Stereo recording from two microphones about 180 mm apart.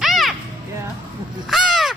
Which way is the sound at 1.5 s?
Centre (ahead or behind).